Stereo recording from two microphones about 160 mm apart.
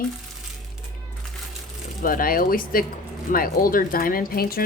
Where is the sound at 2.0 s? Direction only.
60° left (ahead or behind).